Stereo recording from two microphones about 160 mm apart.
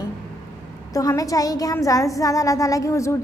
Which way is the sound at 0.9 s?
20° left (ahead or behind).